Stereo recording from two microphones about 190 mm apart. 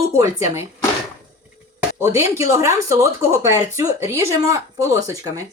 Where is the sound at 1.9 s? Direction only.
15° right (ahead or behind).